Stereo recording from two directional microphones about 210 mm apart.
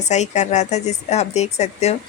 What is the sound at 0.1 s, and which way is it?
Speech, 35° left (ahead or behind).